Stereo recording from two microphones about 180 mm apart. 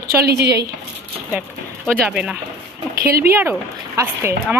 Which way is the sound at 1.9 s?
5° right (ahead or behind).